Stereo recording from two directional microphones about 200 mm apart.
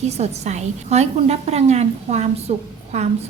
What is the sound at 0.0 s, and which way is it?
A woman's voice, 35° right (ahead or behind).